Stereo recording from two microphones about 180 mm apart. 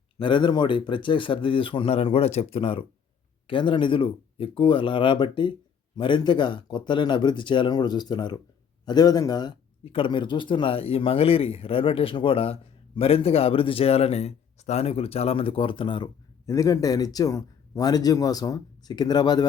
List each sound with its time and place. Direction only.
0.2 s speech: 25° left (ahead or behind)